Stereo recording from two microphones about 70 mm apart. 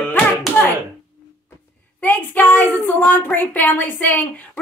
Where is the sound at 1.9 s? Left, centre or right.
Left.